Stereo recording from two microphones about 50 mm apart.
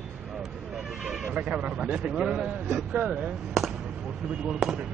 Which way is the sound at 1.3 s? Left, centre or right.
Right.